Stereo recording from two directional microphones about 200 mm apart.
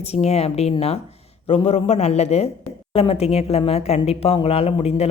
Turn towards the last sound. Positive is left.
turn(degrees=30)  # may be behind; listen again after turning